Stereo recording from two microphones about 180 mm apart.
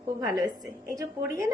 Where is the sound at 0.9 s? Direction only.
20° right (ahead or behind).